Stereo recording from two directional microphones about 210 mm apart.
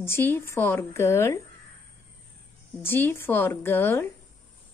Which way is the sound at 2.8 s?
10° left (ahead or behind).